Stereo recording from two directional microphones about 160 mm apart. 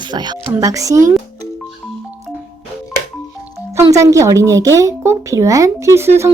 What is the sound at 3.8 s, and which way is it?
A woman's voice, 20° right (ahead or behind).